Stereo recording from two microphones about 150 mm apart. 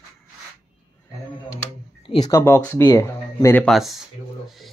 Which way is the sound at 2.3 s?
15° left (ahead or behind).